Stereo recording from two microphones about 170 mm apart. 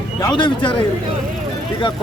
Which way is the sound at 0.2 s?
25° left (ahead or behind).